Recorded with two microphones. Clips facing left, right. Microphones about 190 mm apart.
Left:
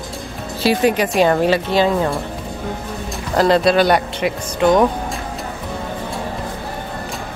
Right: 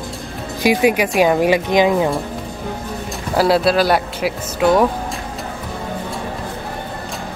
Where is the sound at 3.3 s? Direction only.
5° right (ahead or behind).